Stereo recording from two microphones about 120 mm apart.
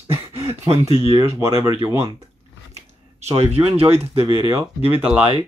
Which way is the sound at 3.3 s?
60° right (ahead or behind).